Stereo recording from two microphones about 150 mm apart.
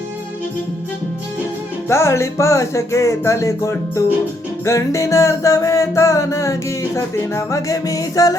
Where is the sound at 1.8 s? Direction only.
20° left (ahead or behind).